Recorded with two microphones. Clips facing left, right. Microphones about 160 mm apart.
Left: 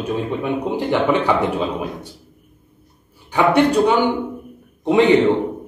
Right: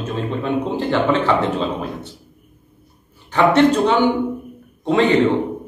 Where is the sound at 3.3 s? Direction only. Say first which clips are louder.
Right 1 dB; 10° left (ahead or behind).